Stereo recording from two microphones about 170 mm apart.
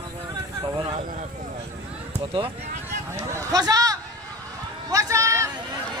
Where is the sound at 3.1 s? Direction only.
20° right (ahead or behind).